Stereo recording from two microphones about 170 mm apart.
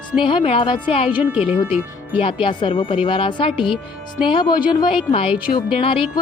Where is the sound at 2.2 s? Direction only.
30° left (ahead or behind).